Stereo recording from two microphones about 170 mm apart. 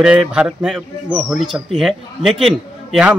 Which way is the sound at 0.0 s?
5° right (ahead or behind).